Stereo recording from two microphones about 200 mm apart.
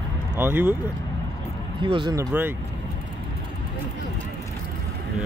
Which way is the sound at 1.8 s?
25° right (ahead or behind).